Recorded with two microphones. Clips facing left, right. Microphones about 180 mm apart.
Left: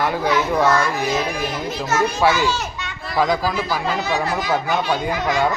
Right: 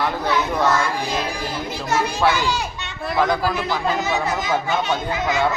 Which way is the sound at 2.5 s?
15° right (ahead or behind).